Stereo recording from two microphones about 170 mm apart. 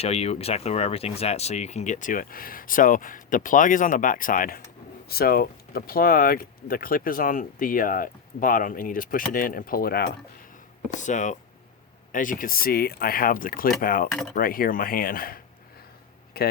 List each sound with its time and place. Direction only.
0.0 s speech: 35° left (ahead or behind); by 10.1 s 65° left (ahead or behind)
10.8 s speech: 45° left (ahead or behind); by 16.5 s 65° left (ahead or behind)